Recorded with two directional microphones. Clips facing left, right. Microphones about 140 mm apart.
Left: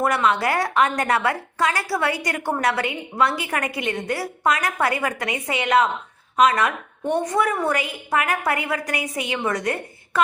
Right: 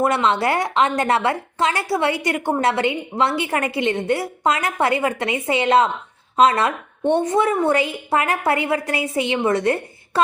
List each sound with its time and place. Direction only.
0.0 s a woman's voice: 25° right (ahead or behind)